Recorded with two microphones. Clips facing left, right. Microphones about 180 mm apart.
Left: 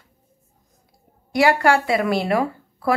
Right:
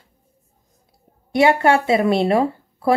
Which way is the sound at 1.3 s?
25° right (ahead or behind).